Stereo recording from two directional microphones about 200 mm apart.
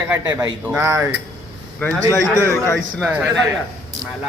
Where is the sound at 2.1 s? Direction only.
10° left (ahead or behind).